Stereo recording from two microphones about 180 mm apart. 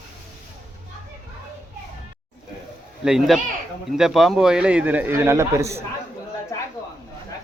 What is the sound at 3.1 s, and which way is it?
A man's voice, centre (ahead or behind).